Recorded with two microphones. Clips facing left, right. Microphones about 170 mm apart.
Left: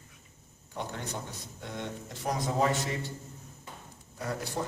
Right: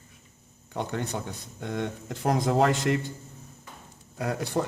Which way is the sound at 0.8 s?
60° right (ahead or behind).